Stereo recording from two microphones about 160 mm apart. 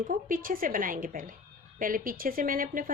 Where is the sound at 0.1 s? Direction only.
60° right (ahead or behind).